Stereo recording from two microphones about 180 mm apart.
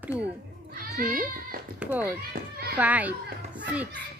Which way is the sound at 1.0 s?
50° right (ahead or behind).